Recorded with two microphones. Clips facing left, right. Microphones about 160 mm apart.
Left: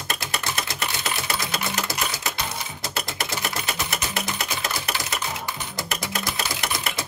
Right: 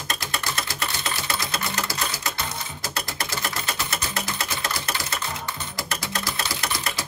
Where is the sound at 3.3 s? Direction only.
20° left (ahead or behind).